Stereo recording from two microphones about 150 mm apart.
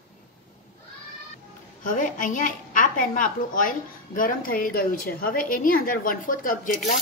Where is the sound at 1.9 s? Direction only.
60° left (ahead or behind).